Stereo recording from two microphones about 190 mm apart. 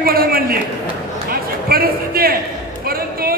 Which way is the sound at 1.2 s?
50° right (ahead or behind).